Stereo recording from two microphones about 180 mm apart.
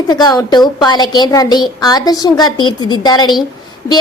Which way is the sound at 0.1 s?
20° left (ahead or behind).